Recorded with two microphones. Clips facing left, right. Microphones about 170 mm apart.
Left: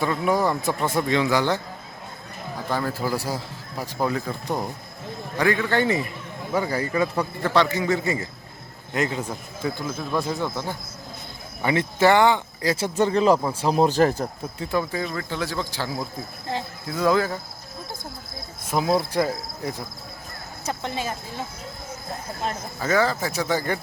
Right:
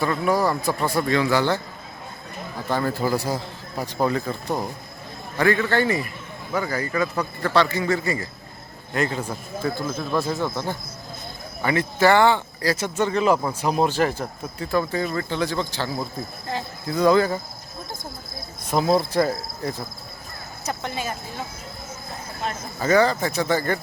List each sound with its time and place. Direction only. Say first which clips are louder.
0.0 s speech: right 1 dB; 20° left (ahead or behind)
2.7 s speech: right 3 dB; 5° left (ahead or behind)
11.6 s speech: even; 25° left (ahead or behind)
12.7 s speech: left 3 dB; 30° left (ahead or behind)
14.6 s speech: right 2 dB; 15° left (ahead or behind)
15.0 s speech: right 3 dB; centre (ahead or behind)
16.9 s speech: right 3 dB; 5° left (ahead or behind)
18.7 s speech: right 2 dB; 5° left (ahead or behind)
20.7 s speech: even; 25° left (ahead or behind)
22.8 s speech: right 3 dB; centre (ahead or behind)